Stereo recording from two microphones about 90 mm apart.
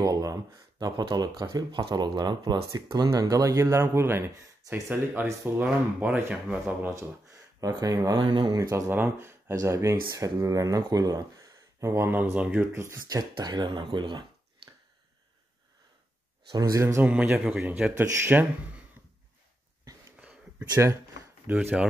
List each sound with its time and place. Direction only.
0.0 s speech: 40° right (ahead or behind)
2.7 s speech: 40° right (ahead or behind)
3.5 s speech: 30° right (ahead or behind)
7.0 s speech: 40° right (ahead or behind)
8.5 s speech: 35° right (ahead or behind); by 12.6 s 15° right (ahead or behind)
12.7 s speech: 30° right (ahead or behind)
13.0 s speech: 50° right (ahead or behind)
16.8 s speech: 25° right (ahead or behind)
19.8 s a sound: 40° right (ahead or behind)
20.5 s speech: 25° right (ahead or behind)